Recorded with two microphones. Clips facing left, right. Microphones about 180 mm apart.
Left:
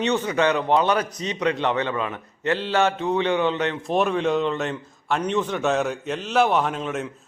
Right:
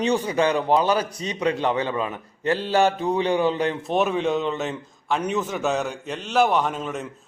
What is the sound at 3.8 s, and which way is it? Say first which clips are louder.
A man's voice: left 2 dB; centre (ahead or behind).